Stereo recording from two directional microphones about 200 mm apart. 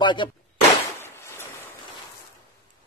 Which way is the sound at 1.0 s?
10° left (ahead or behind).